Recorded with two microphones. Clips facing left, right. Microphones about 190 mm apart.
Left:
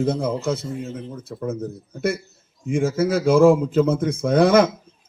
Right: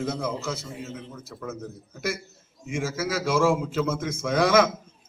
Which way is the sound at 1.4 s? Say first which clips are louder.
Left 8 dB; 30° left (ahead or behind).